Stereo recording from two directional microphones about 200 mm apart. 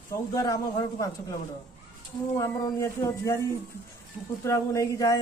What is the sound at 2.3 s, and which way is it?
A man's voice, 15° left (ahead or behind).